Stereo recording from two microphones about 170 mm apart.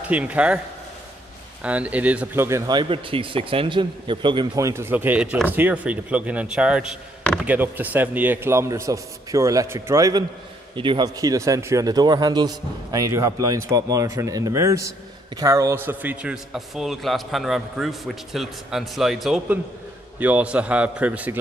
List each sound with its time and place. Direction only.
0.0 s speech: 10° right (ahead or behind)
1.6 s a man's voice: 10° right (ahead or behind)